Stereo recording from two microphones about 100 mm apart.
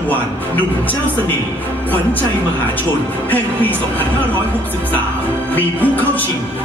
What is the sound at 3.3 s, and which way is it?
Speech, 15° left (ahead or behind).